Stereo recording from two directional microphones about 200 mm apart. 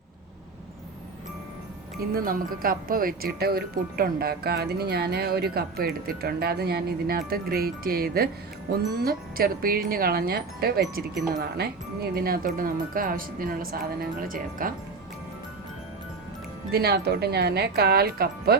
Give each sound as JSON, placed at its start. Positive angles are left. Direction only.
{"t": 2.1, "sound": "speech", "side_deg": -45}
{"t": 16.7, "sound": "speech", "side_deg": -55}